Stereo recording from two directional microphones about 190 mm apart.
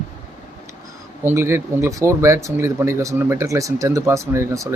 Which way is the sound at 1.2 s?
15° right (ahead or behind).